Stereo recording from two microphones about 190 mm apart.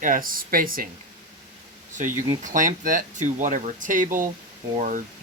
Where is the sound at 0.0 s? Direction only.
45° right (ahead or behind).